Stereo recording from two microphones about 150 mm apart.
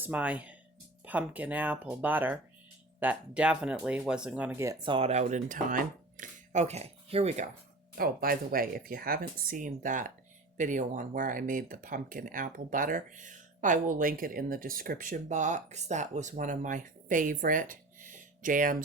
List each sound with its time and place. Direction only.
0.0 s speech: 10° right (ahead or behind)
4.8 s speech: 35° right (ahead or behind)
7.9 s speech: 75° right (ahead or behind)